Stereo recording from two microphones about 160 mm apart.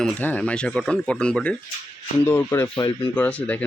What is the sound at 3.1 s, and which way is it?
Speech, 10° left (ahead or behind).